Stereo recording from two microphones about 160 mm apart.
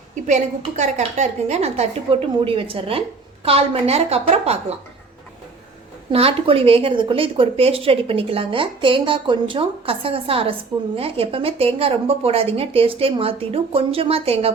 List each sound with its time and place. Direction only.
0.3 s a woman's voice: 45° right (ahead or behind)
6.1 s a woman's voice: 35° right (ahead or behind)